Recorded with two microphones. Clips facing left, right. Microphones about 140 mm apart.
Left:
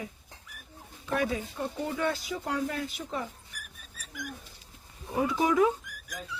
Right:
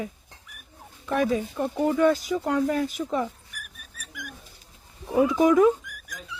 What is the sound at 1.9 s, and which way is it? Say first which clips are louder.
Speech: right 11 dB; 45° right (ahead or behind).